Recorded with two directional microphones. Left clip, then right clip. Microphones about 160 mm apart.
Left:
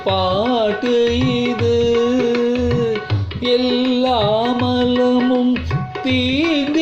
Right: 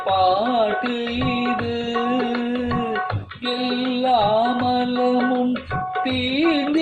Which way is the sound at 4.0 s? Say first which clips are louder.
Right 1 dB; 30° left (ahead or behind).